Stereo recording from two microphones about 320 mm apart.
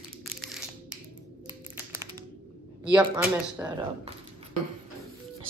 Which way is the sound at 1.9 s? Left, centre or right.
Centre.